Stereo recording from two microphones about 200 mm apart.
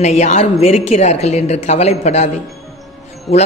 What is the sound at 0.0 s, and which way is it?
Speech, 35° left (ahead or behind).